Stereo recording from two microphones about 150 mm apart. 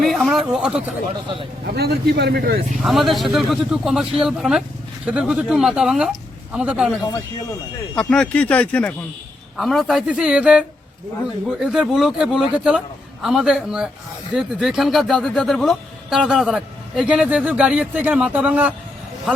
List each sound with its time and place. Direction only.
0.0 s a sound: centre (ahead or behind)
1.6 s a man's voice: 90° right
2.7 s speech: centre (ahead or behind)
7.9 s speech: 5° left (ahead or behind); by 18.7 s 10° right (ahead or behind)